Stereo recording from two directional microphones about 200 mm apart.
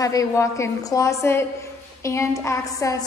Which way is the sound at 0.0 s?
15° left (ahead or behind).